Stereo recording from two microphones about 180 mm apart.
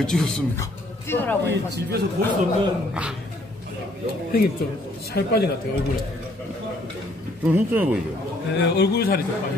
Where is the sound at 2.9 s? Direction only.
5° right (ahead or behind).